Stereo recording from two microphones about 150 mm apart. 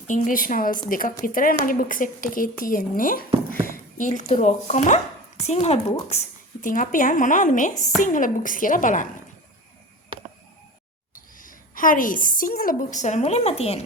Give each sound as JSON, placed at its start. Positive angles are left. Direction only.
{"t": 0.1, "sound": "a woman's voice", "side_deg": 65}
{"t": 3.9, "sound": "speech", "side_deg": 60}
{"t": 6.6, "sound": "speech", "side_deg": 60}
{"t": 11.1, "sound": "a woman's voice", "side_deg": 65}